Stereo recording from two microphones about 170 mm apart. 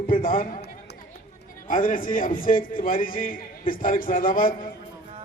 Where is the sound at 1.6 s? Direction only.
50° left (ahead or behind).